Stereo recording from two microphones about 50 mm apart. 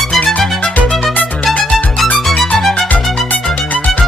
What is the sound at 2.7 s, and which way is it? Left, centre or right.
Music, left.